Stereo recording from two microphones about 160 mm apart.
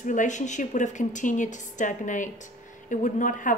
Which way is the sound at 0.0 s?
50° left (ahead or behind).